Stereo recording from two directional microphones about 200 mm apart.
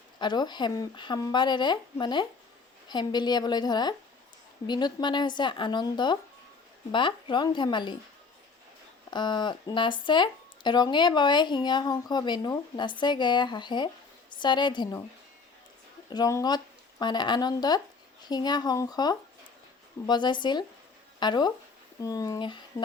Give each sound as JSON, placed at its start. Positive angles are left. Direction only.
{"t": 0.2, "sound": "speech", "side_deg": 20}
{"t": 9.0, "sound": "speech", "side_deg": 20}
{"t": 16.1, "sound": "speech", "side_deg": 20}